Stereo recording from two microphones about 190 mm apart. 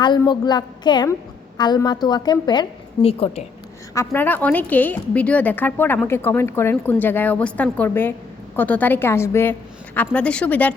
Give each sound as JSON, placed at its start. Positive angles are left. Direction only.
{"t": 0.0, "sound": "a woman's voice", "side_deg": 25}
{"t": 3.9, "sound": "a woman's voice", "side_deg": 10}